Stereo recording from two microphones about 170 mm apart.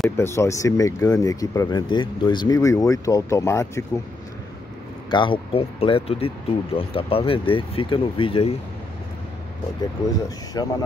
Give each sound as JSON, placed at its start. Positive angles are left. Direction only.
{"t": 0.2, "sound": "speech", "side_deg": 15}
{"t": 5.1, "sound": "speech", "side_deg": 30}
{"t": 10.6, "sound": "speech", "side_deg": 20}